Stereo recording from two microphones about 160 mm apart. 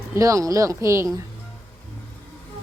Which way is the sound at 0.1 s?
20° right (ahead or behind).